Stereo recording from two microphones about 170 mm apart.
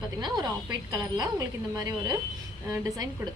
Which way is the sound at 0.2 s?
25° right (ahead or behind).